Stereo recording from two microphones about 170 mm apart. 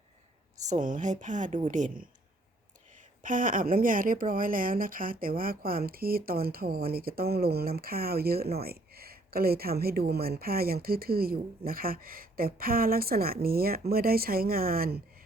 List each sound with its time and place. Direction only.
0.6 s a woman's voice: 45° right (ahead or behind); by 15.0 s 65° right (ahead or behind)